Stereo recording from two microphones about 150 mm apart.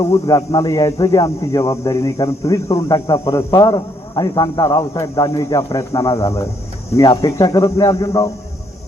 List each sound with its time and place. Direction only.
0.3 s a man's voice: 25° left (ahead or behind)